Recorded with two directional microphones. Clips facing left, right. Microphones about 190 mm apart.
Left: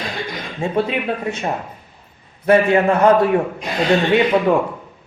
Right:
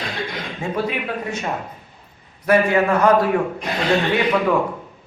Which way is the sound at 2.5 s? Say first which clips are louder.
Left 3 dB; 25° left (ahead or behind).